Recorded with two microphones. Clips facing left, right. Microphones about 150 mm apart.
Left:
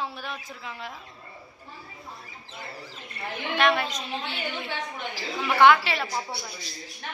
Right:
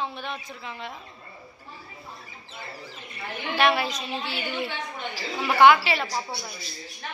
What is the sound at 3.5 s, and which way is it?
Speech, 5° right (ahead or behind).